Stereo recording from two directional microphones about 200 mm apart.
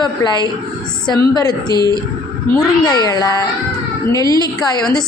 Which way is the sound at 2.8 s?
20° left (ahead or behind).